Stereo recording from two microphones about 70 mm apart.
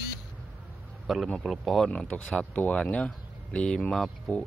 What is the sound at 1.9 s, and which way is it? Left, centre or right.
Speech, centre.